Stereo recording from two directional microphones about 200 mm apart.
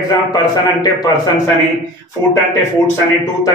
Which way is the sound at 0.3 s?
20° left (ahead or behind).